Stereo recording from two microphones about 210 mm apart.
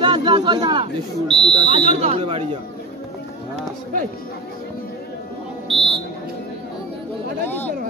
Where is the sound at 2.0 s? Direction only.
30° right (ahead or behind).